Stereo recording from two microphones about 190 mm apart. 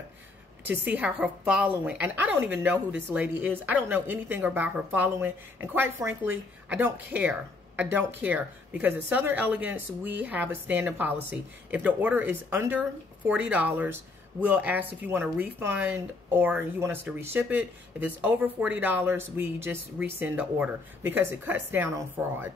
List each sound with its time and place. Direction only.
0.7 s speech: 10° right (ahead or behind)